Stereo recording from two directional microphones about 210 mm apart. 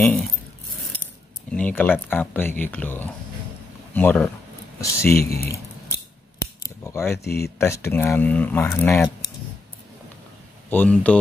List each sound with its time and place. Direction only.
0.0 s a sound: 5° left (ahead or behind)
1.5 s speech: 5° left (ahead or behind)
5.1 s speech: 45° left (ahead or behind)
6.4 s scissors: 15° left (ahead or behind)
7.2 s speech: 50° left (ahead or behind)
7.5 s speech: 10° left (ahead or behind)
10.7 s speech: 10° left (ahead or behind)